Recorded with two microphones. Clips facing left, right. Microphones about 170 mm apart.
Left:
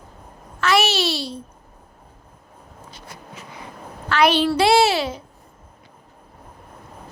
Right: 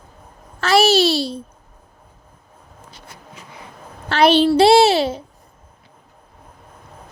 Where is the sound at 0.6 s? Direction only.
35° right (ahead or behind).